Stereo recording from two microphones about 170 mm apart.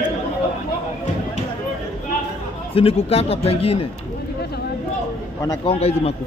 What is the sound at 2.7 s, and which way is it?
Speech, 35° left (ahead or behind).